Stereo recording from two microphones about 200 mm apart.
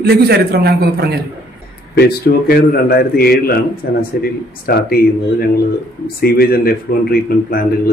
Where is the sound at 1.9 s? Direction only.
50° left (ahead or behind).